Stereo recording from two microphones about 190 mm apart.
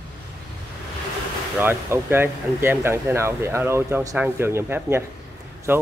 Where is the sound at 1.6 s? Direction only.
10° right (ahead or behind).